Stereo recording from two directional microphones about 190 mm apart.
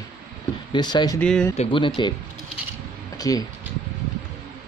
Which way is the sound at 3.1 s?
20° left (ahead or behind).